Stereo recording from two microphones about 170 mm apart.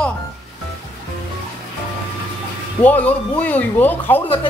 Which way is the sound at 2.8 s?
10° left (ahead or behind).